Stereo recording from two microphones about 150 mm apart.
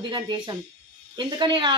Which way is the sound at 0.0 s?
30° right (ahead or behind).